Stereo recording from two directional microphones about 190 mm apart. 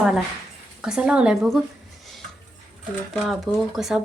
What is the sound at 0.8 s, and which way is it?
Speech, 5° right (ahead or behind).